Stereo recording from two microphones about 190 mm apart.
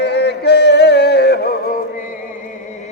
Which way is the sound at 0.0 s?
65° left (ahead or behind).